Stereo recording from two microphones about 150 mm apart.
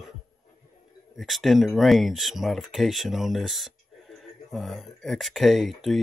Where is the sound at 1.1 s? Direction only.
Centre (ahead or behind).